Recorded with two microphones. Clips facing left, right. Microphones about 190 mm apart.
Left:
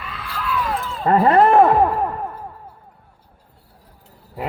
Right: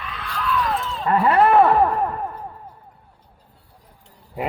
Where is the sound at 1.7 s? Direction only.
10° left (ahead or behind).